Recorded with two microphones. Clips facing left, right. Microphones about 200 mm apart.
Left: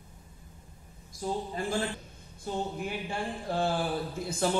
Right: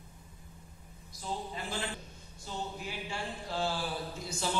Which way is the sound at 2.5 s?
55° left (ahead or behind).